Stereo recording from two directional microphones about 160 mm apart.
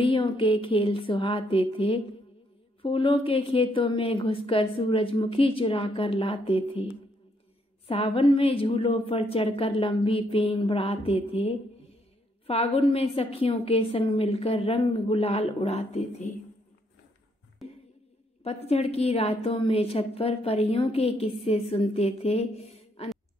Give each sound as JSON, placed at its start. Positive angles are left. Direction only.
{"t": 0.0, "sound": "a woman's voice", "side_deg": 35}
{"t": 7.9, "sound": "a woman's voice", "side_deg": 35}
{"t": 17.6, "sound": "a sound", "side_deg": 0}
{"t": 18.4, "sound": "a woman's voice", "side_deg": 40}